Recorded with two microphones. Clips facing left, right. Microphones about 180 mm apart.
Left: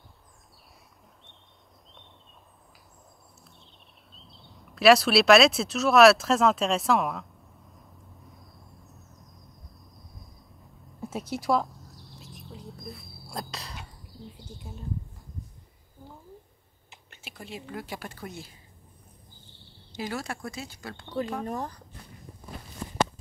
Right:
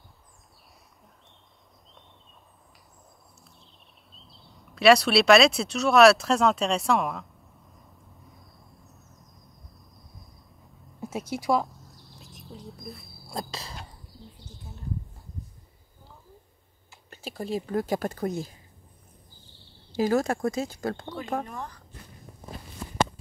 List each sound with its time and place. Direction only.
4.1 s speech: centre (ahead or behind)
8.3 s a sound: centre (ahead or behind)
17.1 s speech: 35° right (ahead or behind)
20.0 s speech: 45° right (ahead or behind)
21.5 s speech: 40° left (ahead or behind)